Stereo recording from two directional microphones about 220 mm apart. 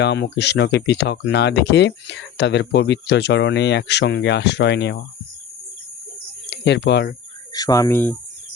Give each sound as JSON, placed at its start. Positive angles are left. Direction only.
{"t": 0.0, "sound": "speech", "side_deg": 50}
{"t": 6.5, "sound": "speech", "side_deg": 50}
{"t": 7.5, "sound": "speech", "side_deg": 15}